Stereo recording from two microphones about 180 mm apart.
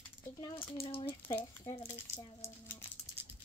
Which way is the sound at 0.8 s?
30° left (ahead or behind).